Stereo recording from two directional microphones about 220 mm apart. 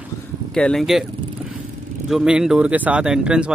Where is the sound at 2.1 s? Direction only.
5° right (ahead or behind).